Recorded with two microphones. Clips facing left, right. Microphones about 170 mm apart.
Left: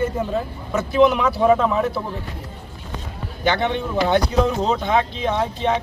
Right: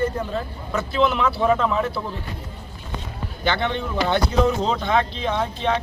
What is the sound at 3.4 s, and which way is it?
Speech, 15° left (ahead or behind).